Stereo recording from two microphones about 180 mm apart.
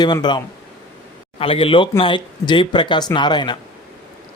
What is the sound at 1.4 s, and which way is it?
Speech, 30° left (ahead or behind).